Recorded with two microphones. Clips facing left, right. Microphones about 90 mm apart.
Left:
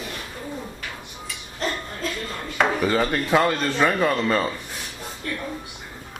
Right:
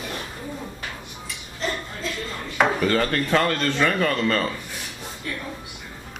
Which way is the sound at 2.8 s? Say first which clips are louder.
Even; 10° left (ahead or behind).